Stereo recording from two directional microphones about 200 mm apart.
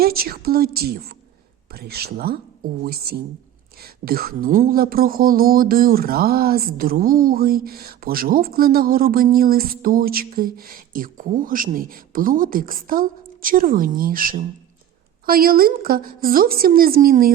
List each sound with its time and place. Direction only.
0.0 s speech: 50° right (ahead or behind)